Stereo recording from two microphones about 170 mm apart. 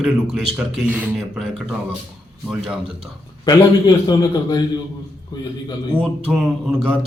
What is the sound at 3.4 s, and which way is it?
A man's voice, 25° left (ahead or behind).